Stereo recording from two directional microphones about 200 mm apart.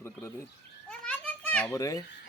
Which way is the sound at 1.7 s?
15° left (ahead or behind).